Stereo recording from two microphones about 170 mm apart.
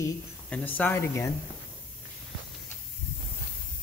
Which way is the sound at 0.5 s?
10° left (ahead or behind).